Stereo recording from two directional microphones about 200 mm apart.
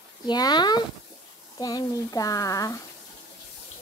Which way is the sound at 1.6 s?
20° left (ahead or behind).